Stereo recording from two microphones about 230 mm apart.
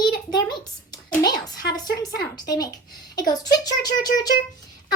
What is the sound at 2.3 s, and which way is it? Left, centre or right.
A child's voice, centre.